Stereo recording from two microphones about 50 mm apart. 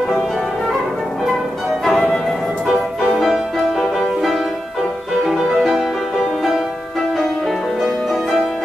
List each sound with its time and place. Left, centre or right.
1.9 s flute: centre
2.6 s music: centre
5.6 s music: centre
7.8 s music: centre